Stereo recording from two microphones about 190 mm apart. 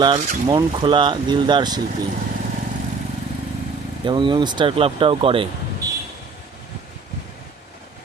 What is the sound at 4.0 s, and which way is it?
Speech, 25° right (ahead or behind).